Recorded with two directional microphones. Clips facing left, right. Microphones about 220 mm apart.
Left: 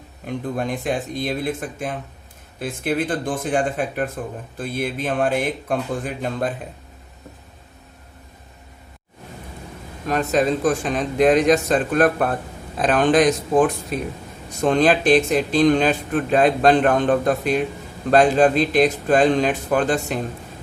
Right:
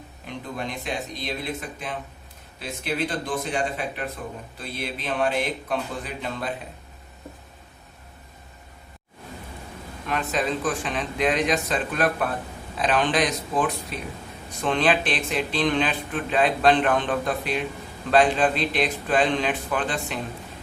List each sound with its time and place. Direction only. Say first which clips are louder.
0.3 s speech: left 8 dB; 50° left (ahead or behind)
10.1 s speech: left 7 dB; 45° left (ahead or behind)